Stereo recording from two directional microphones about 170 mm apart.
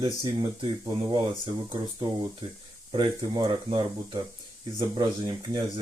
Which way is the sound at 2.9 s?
25° right (ahead or behind).